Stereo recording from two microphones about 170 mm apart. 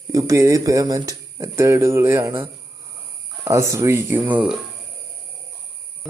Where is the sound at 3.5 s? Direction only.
15° right (ahead or behind).